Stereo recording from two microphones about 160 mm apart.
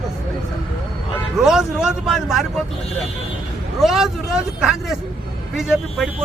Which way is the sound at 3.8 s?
Centre (ahead or behind).